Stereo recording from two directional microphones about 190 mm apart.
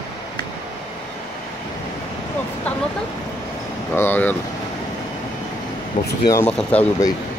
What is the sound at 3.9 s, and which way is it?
Speech, 10° left (ahead or behind).